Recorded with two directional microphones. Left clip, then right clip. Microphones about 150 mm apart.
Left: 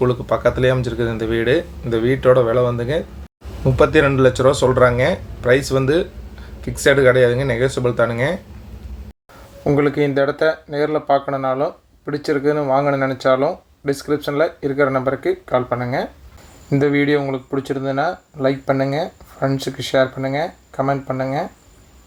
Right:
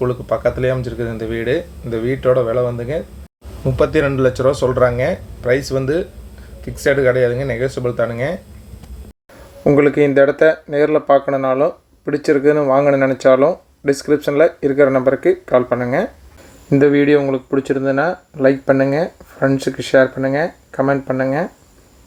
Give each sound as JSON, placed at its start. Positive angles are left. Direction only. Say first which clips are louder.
{"t": 0.0, "sound": "speech", "louder": "even", "side_deg": 0}
{"t": 9.6, "sound": "speech", "louder": "right 5 dB", "side_deg": -25}